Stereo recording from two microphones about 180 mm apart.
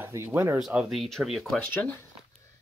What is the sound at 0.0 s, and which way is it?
Speech, 10° right (ahead or behind).